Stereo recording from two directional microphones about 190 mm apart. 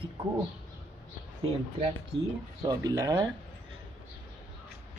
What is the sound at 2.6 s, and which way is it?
Speech, 20° right (ahead or behind).